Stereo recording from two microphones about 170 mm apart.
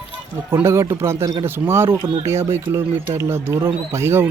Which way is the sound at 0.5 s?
15° right (ahead or behind).